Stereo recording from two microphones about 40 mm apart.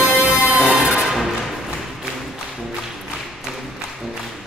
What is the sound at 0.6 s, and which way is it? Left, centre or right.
Music, centre.